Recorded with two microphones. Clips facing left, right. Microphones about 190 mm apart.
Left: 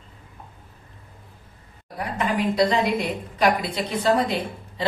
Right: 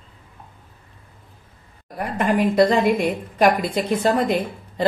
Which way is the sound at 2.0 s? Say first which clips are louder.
Right 4 dB; 50° right (ahead or behind).